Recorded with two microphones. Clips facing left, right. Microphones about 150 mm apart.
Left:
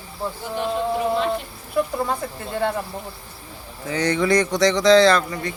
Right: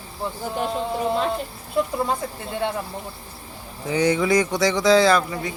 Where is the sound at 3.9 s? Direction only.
10° right (ahead or behind).